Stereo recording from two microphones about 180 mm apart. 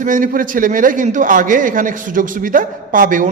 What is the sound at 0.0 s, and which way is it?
A man's voice, 50° right (ahead or behind).